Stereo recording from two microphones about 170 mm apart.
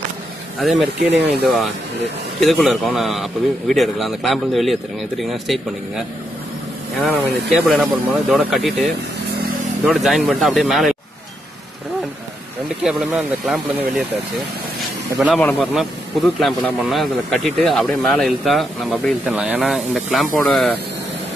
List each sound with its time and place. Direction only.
0.6 s speech: centre (ahead or behind)
1.0 s speech: 75° right (ahead or behind)
2.4 s speech: centre (ahead or behind)
12.8 s speech: centre (ahead or behind)
15.2 s speech: 10° left (ahead or behind)